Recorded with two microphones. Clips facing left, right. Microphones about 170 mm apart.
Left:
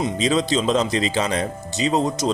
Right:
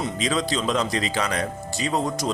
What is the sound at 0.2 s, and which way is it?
A man's voice, 25° left (ahead or behind).